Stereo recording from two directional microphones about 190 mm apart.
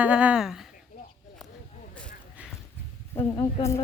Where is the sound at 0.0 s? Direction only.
5° right (ahead or behind).